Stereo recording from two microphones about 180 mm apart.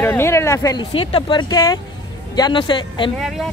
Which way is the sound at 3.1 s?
Centre (ahead or behind).